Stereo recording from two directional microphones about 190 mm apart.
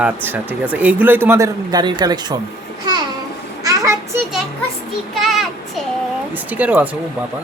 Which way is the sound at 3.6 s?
15° right (ahead or behind).